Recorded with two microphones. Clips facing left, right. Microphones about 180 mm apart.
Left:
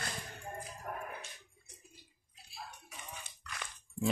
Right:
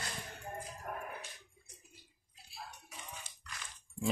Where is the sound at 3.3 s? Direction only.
60° left (ahead or behind).